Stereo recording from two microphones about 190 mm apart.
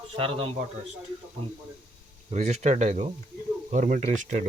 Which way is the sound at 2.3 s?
35° right (ahead or behind).